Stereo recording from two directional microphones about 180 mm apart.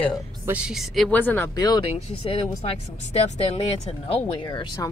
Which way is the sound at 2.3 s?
35° left (ahead or behind).